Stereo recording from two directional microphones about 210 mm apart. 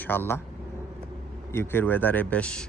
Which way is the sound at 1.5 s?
10° left (ahead or behind).